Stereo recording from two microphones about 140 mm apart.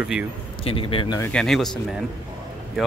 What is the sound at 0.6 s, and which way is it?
Speech, 40° left (ahead or behind).